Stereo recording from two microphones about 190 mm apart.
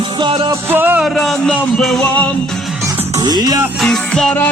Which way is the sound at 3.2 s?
20° right (ahead or behind).